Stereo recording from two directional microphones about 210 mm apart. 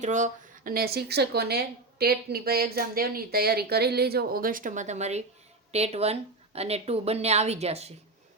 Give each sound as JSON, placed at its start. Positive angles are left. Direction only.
{"t": 0.0, "sound": "a woman's voice", "side_deg": -35}